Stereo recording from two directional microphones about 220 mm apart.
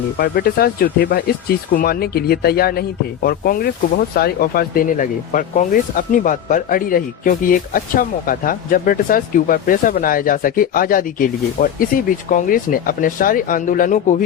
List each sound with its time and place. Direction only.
0.2 s speech: 45° left (ahead or behind)